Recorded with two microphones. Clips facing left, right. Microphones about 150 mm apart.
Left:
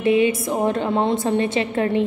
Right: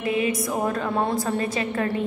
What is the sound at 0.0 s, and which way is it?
A woman's voice, 25° left (ahead or behind).